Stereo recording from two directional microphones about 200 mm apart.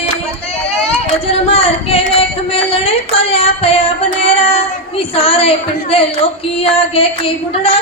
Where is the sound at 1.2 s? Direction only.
30° left (ahead or behind).